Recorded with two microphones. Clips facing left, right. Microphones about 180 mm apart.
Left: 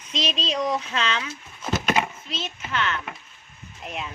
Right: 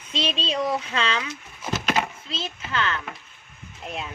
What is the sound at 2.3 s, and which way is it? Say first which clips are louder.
Speech: even; 30° right (ahead or behind).